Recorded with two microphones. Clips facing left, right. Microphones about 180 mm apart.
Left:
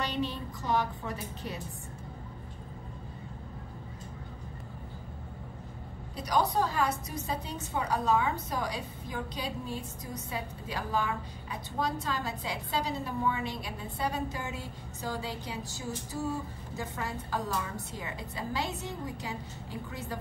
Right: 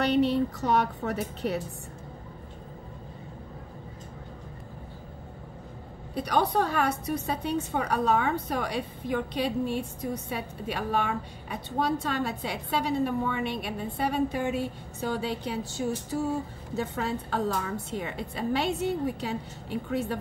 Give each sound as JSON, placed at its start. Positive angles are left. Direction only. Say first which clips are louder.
{"t": 0.0, "sound": "a woman's voice", "louder": "right 10 dB", "side_deg": -70}
{"t": 6.1, "sound": "a woman's voice", "louder": "right 3 dB", "side_deg": -65}